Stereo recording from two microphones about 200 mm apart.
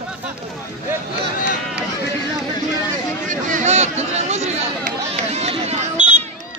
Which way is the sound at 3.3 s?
40° right (ahead or behind).